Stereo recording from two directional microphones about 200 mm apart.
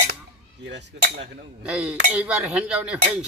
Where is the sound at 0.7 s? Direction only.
60° right (ahead or behind).